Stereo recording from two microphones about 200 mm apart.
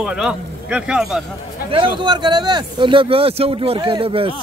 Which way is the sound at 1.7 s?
20° right (ahead or behind).